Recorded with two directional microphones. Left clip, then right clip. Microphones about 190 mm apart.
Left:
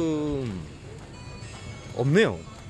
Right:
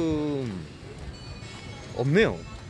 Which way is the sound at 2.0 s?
5° left (ahead or behind).